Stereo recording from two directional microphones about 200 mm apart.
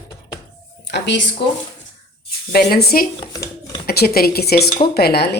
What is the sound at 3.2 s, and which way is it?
Shuffling cards, 20° left (ahead or behind).